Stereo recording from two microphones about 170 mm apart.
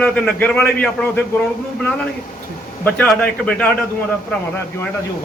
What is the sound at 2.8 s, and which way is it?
Speech, 10° left (ahead or behind).